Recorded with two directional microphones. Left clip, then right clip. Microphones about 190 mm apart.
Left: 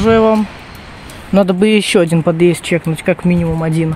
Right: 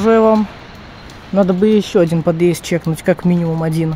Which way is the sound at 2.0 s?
5° left (ahead or behind).